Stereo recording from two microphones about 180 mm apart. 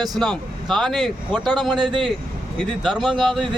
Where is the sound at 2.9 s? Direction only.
25° right (ahead or behind).